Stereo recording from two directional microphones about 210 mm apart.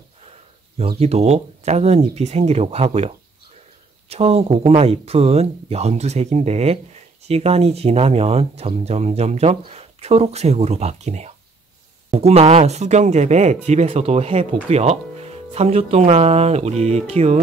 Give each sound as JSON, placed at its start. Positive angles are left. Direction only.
{"t": 0.7, "sound": "speech", "side_deg": -30}
{"t": 4.1, "sound": "speech", "side_deg": -30}